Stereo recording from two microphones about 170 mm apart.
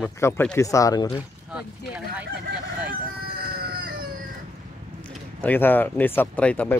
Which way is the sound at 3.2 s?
65° right (ahead or behind).